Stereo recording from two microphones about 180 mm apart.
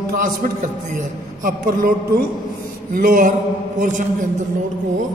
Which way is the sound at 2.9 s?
45° right (ahead or behind).